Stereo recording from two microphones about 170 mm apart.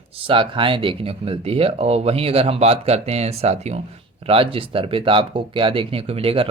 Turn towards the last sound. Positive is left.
turn(degrees=-35)  # may be behind; listen again after turning